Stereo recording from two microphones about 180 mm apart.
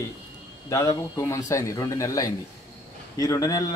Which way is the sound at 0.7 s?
15° left (ahead or behind).